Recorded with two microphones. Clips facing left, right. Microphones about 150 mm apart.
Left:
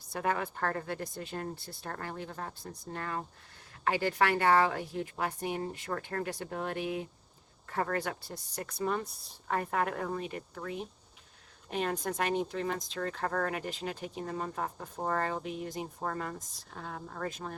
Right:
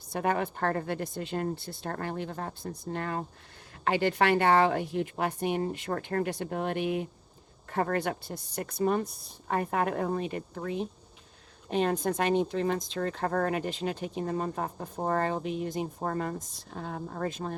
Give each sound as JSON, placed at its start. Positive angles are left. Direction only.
{"t": 0.1, "sound": "speech", "side_deg": -25}
{"t": 2.8, "sound": "speech", "side_deg": -25}
{"t": 8.8, "sound": "speech", "side_deg": -40}
{"t": 9.5, "sound": "speech", "side_deg": -25}